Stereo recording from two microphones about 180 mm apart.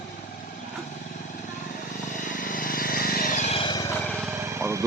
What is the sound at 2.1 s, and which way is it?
Vehicle, 45° left (ahead or behind).